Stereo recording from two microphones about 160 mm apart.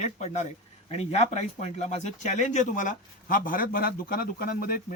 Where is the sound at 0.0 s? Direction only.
45° left (ahead or behind).